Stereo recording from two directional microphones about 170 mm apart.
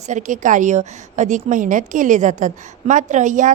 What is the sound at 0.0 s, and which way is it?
A woman's voice, 45° right (ahead or behind).